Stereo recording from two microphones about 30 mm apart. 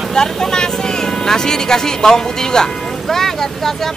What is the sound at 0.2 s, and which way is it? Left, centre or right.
Speech, left.